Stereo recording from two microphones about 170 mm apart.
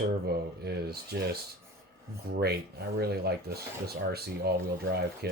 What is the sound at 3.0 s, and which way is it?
Speech, 70° right (ahead or behind).